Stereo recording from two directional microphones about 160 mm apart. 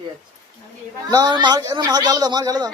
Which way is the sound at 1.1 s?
25° right (ahead or behind).